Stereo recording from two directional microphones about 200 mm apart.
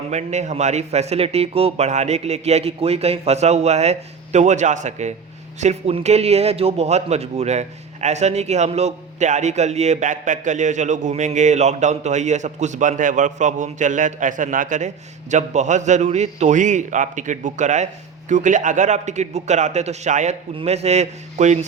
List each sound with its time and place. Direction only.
0.1 s a man's voice: 35° right (ahead or behind)